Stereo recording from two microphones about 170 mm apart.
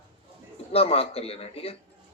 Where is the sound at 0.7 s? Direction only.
35° left (ahead or behind).